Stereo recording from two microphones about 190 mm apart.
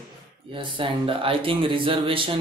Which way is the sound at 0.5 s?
25° right (ahead or behind).